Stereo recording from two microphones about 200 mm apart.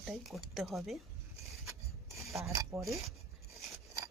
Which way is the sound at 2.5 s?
15° right (ahead or behind).